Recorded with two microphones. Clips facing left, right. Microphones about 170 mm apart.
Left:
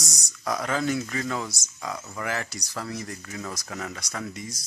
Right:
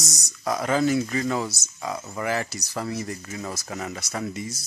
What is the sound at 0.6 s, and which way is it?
Speech, 5° right (ahead or behind).